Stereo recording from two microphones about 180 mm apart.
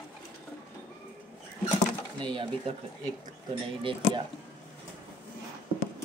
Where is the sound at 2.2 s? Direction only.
30° right (ahead or behind).